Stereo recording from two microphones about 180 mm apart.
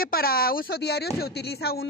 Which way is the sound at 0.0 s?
55° left (ahead or behind).